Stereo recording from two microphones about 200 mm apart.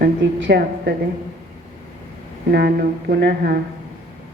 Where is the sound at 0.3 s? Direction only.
60° right (ahead or behind).